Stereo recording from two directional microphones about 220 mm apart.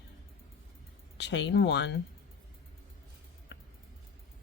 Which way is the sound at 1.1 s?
50° left (ahead or behind).